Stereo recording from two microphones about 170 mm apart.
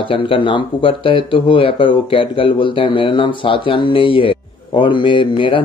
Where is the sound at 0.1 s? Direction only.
30° left (ahead or behind).